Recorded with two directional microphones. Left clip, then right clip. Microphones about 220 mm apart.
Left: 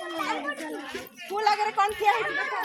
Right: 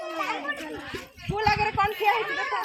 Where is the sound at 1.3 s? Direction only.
20° left (ahead or behind).